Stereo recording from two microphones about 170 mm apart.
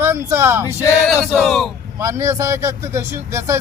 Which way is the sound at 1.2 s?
Centre (ahead or behind).